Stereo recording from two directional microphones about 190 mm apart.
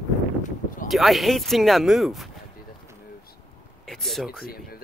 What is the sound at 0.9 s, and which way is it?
Speech, centre (ahead or behind).